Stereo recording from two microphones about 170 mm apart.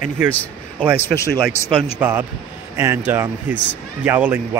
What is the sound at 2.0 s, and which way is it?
Speech, 10° right (ahead or behind).